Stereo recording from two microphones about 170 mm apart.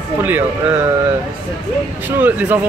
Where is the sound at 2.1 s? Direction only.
10° right (ahead or behind).